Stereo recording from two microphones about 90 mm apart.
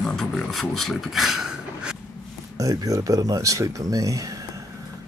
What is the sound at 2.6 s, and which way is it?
Speech, 40° right (ahead or behind).